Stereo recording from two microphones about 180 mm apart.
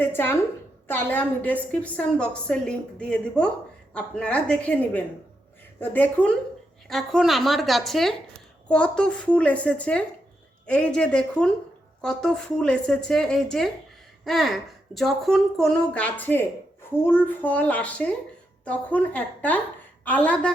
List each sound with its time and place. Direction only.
0.0 s a woman's voice: 10° left (ahead or behind)